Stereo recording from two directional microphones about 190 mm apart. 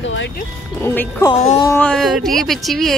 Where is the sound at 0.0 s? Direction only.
80° left.